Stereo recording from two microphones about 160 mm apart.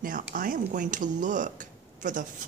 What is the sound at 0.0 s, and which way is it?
Speech, 60° right (ahead or behind).